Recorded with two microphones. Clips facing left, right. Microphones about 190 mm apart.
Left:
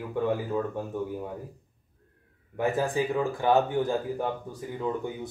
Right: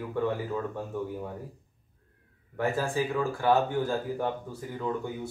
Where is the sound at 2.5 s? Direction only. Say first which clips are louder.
Left 2 dB; 15° left (ahead or behind).